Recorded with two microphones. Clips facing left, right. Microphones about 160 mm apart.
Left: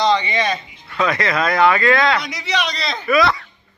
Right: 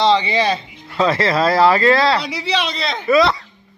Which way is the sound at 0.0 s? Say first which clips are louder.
Right 2 dB; 30° right (ahead or behind).